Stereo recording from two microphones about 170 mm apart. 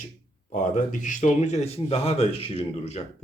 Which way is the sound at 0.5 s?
50° left (ahead or behind).